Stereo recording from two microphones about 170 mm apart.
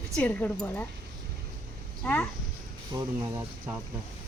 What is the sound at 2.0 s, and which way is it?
Speech, 10° left (ahead or behind).